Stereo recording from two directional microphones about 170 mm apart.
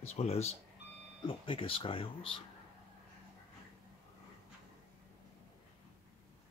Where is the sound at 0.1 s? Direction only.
40° left (ahead or behind).